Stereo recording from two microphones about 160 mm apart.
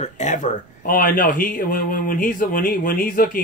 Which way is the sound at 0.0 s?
50° left (ahead or behind).